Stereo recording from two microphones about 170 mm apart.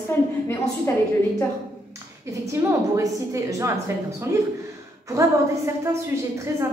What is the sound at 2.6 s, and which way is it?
A woman's voice, 15° right (ahead or behind).